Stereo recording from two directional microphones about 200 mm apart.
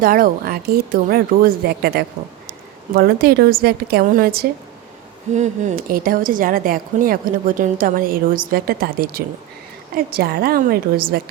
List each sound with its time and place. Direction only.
0.0 s a woman's voice: 45° right (ahead or behind)
5.3 s speech: 35° right (ahead or behind)